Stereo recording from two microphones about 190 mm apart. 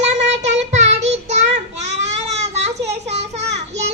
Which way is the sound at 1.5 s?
35° right (ahead or behind).